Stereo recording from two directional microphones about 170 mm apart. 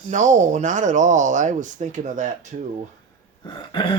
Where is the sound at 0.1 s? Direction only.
45° right (ahead or behind).